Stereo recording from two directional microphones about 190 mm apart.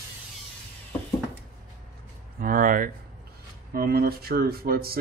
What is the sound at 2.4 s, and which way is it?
Speech, 45° right (ahead or behind).